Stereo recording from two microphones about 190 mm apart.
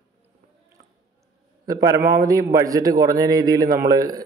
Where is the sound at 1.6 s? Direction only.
20° right (ahead or behind).